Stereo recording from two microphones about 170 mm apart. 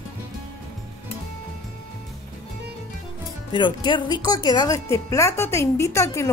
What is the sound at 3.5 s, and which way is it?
Speech, 30° left (ahead or behind).